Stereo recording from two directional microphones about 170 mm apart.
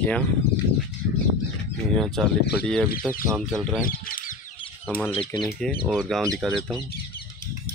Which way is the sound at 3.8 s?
55° left (ahead or behind).